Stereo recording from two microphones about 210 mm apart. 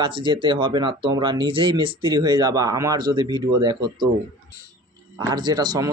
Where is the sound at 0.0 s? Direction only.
25° right (ahead or behind).